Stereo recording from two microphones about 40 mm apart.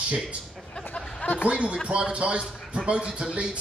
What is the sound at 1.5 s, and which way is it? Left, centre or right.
Speech, right.